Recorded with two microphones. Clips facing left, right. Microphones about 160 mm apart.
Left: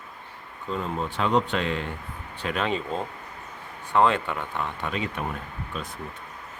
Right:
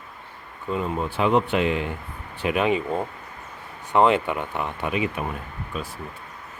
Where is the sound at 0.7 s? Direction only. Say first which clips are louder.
Right 3 dB; 10° right (ahead or behind).